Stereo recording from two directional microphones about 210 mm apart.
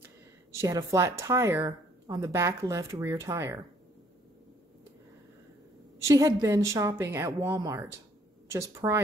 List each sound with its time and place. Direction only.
0.5 s speech: 15° right (ahead or behind)
6.0 s speech: 15° right (ahead or behind)
8.8 s speech: 20° right (ahead or behind)